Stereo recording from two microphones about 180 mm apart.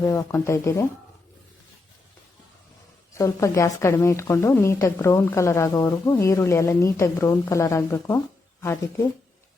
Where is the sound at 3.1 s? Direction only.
15° left (ahead or behind).